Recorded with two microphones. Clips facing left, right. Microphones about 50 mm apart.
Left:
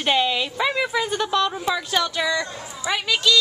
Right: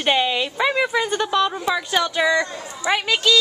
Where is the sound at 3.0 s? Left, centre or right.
Right.